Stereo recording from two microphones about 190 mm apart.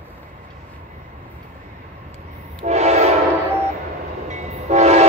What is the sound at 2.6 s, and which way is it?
Train horn, 35° right (ahead or behind).